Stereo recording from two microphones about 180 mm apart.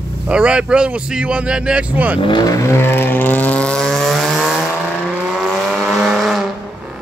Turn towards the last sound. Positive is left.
turn(degrees=0)  # may be behind; listen again after turning